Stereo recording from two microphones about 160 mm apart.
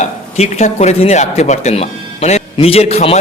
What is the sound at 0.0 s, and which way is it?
A man's voice, 45° left (ahead or behind).